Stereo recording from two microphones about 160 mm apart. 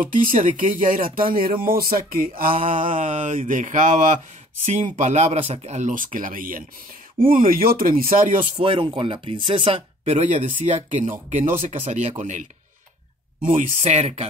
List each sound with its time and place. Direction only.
0.0 s speech: 55° right (ahead or behind)
2.8 s speech: 50° right (ahead or behind)
4.9 s speech: 45° right (ahead or behind); by 8.4 s 60° right (ahead or behind)
8.5 s speech: 35° right (ahead or behind)
13.5 s speech: 55° right (ahead or behind)